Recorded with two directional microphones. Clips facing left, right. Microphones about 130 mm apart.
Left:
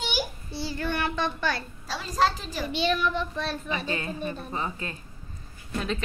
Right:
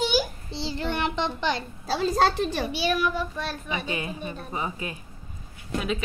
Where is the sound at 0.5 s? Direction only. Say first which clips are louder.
Right 1 dB; 20° right (ahead or behind).